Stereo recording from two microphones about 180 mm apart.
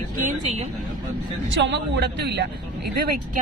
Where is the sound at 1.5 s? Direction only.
85° right; by 2.4 s 70° right (ahead or behind).